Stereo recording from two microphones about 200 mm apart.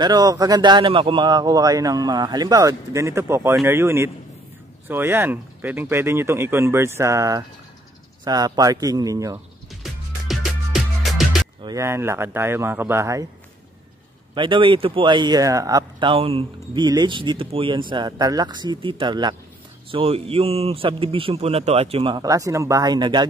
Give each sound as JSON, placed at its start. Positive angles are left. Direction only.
{"t": 0.0, "sound": "speech", "side_deg": -20}
{"t": 9.8, "sound": "music", "side_deg": 0}
{"t": 11.6, "sound": "speech", "side_deg": -15}
{"t": 14.3, "sound": "speech", "side_deg": -25}